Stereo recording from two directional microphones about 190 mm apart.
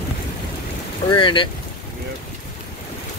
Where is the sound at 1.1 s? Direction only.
25° left (ahead or behind).